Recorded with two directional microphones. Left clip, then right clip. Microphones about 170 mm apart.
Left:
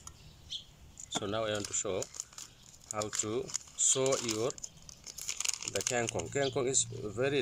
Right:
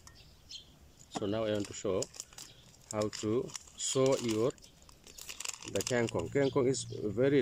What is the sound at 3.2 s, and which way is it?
Speech, 30° right (ahead or behind).